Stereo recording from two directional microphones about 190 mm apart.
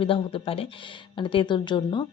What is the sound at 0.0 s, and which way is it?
A woman's voice, 30° left (ahead or behind).